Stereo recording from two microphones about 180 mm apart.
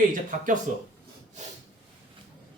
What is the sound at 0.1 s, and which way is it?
Speech, 45° right (ahead or behind).